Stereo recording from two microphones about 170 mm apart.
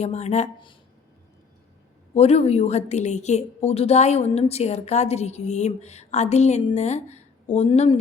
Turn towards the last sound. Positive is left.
turn(degrees=35)  # may be behind; listen again after turning